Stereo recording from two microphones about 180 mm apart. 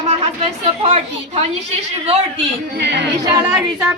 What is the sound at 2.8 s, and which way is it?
A capella, 75° right (ahead or behind).